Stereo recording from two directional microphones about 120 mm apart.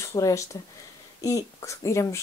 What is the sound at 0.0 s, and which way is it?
Speech, 25° left (ahead or behind).